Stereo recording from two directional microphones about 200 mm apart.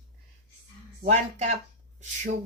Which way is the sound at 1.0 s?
35° right (ahead or behind).